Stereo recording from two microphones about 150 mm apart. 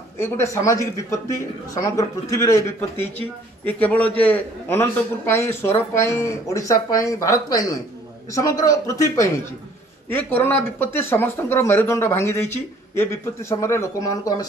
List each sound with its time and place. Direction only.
0.2 s a man's voice: 20° left (ahead or behind)